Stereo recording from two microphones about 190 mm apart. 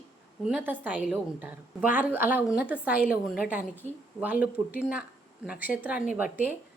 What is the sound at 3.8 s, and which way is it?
Speech, 35° right (ahead or behind).